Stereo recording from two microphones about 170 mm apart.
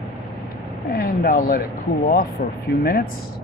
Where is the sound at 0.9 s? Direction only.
65° left (ahead or behind).